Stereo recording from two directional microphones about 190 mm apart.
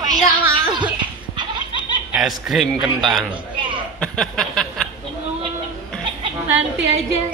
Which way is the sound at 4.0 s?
5° left (ahead or behind).